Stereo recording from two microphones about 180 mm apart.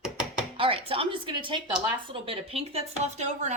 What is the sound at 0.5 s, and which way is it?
A woman's voice, 30° right (ahead or behind).